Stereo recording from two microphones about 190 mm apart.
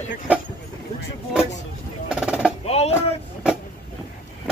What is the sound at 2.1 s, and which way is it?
Percussion, 5° right (ahead or behind).